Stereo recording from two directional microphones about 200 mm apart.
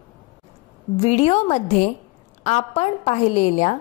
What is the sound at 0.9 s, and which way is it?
A woman's voice, 30° left (ahead or behind).